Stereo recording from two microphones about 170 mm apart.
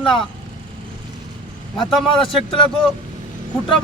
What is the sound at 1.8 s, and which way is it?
Speech, centre (ahead or behind).